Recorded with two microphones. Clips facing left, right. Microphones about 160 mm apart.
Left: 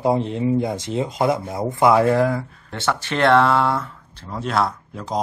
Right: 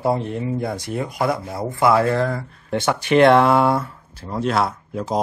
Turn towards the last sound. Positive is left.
turn(degrees=-5)  # may be behind; listen again after turning